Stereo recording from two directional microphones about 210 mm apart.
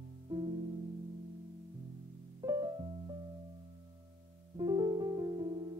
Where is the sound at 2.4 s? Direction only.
15° right (ahead or behind).